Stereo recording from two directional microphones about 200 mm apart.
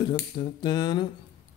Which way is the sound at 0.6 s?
20° left (ahead or behind).